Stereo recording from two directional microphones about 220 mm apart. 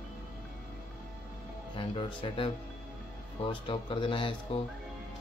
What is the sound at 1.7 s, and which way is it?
Speech, 25° left (ahead or behind).